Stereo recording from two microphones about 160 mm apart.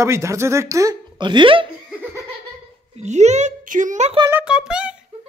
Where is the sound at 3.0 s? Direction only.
45° right (ahead or behind).